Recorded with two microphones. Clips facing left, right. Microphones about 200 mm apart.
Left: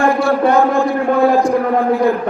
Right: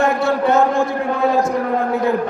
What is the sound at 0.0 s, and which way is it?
A man's voice, 20° right (ahead or behind).